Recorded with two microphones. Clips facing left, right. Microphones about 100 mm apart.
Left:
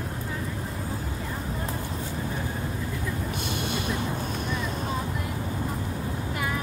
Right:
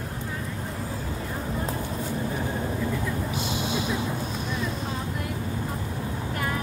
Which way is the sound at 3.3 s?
55° left (ahead or behind).